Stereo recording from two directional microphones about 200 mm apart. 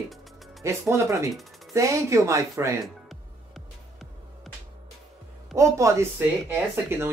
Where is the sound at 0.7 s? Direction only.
15° right (ahead or behind).